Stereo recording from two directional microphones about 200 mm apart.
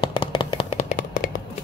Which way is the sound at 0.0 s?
25° left (ahead or behind).